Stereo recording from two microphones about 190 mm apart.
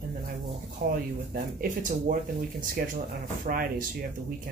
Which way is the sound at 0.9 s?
50° right (ahead or behind).